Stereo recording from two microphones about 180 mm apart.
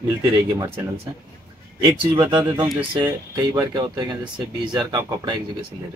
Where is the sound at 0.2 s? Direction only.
15° right (ahead or behind).